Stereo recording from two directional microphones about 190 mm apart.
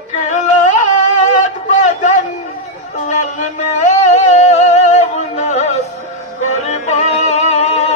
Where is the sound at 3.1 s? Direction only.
40° left (ahead or behind).